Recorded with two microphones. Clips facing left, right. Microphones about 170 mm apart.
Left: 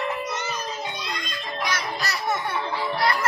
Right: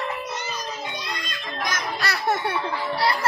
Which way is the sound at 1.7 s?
55° right (ahead or behind).